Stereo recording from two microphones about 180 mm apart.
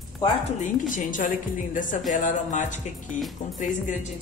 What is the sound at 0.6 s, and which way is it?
A woman's voice, 45° left (ahead or behind).